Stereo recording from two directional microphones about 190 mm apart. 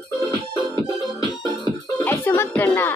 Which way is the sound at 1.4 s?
20° left (ahead or behind).